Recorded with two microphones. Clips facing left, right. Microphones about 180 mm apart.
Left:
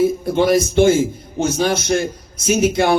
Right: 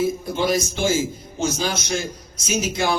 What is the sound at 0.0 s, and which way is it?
A man's voice, 55° left (ahead or behind).